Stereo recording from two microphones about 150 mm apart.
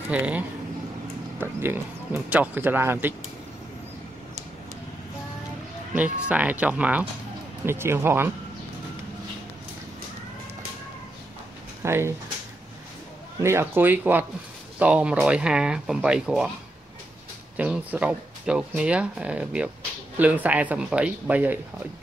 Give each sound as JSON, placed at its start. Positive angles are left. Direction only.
{"t": 0.1, "sound": "speech", "side_deg": -10}
{"t": 5.9, "sound": "speech", "side_deg": -10}
{"t": 11.8, "sound": "speech", "side_deg": -15}
{"t": 13.4, "sound": "speech", "side_deg": -15}
{"t": 17.6, "sound": "speech", "side_deg": -10}